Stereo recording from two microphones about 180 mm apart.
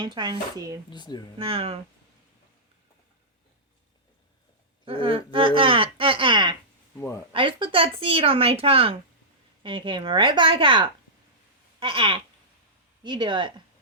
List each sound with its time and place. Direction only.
0.0 s speech: 25° right (ahead or behind)
0.9 s speech: 25° left (ahead or behind)
1.4 s speech: 30° right (ahead or behind)
4.9 s speech: 30° right (ahead or behind)
7.0 s speech: 10° left (ahead or behind)
7.3 s speech: 30° right (ahead or behind)